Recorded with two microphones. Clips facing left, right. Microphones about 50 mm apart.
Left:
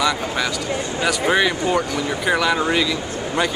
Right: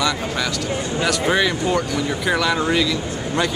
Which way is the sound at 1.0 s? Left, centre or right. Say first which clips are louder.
Left 1 dB; centre.